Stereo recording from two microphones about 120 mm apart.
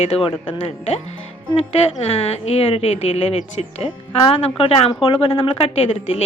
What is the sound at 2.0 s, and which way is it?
A woman's voice, 60° left (ahead or behind).